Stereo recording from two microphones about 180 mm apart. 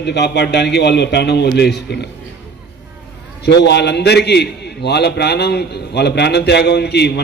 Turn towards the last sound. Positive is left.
turn(degrees=65)  # may be behind; listen again after turning